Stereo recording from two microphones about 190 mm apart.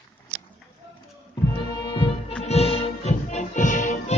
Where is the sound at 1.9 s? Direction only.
25° left (ahead or behind).